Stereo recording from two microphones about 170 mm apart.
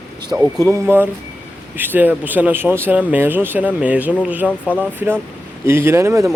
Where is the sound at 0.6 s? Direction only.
15° right (ahead or behind).